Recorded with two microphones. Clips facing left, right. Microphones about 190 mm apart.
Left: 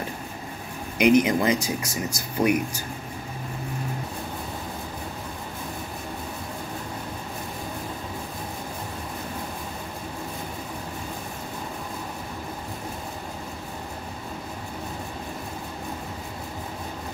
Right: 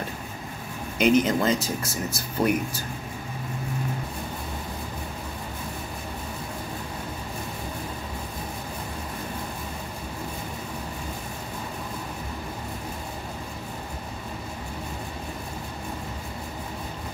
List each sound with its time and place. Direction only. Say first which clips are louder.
0.9 s speech: left 2 dB; 15° left (ahead or behind)